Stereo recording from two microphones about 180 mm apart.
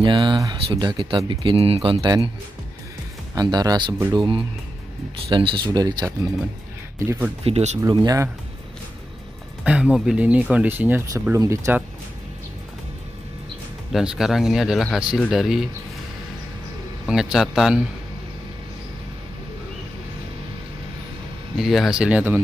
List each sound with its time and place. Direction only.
0.0 s speech: 25° right (ahead or behind)
3.3 s speech: 20° right (ahead or behind)
7.1 s speech: 10° right (ahead or behind)
7.4 s speech: 35° right (ahead or behind)
7.8 s speech: 20° right (ahead or behind)
9.7 s speech: 5° right (ahead or behind)
13.9 s speech: centre (ahead or behind)
17.1 s speech: 5° right (ahead or behind)
21.5 s speech: centre (ahead or behind)